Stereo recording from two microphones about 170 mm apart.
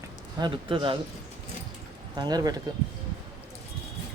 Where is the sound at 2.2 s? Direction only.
25° right (ahead or behind).